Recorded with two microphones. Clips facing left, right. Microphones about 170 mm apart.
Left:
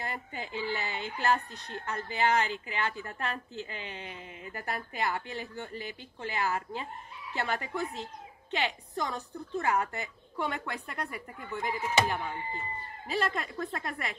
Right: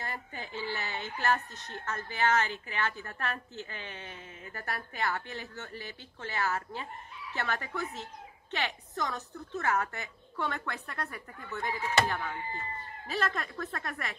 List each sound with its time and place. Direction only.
0.0 s speech: 15° left (ahead or behind)